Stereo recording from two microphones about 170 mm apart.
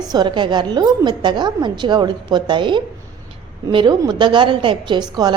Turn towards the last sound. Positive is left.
turn(degrees=-25)  # may be behind; listen again after turning